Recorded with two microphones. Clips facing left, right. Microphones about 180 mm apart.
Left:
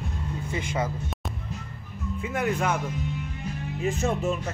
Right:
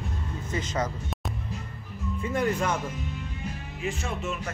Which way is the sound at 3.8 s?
40° left (ahead or behind).